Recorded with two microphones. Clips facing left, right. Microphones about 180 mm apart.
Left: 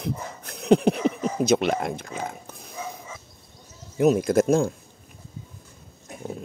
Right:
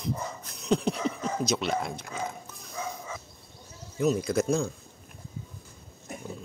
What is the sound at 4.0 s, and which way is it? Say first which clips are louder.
Speech: left 6 dB; 60° left (ahead or behind).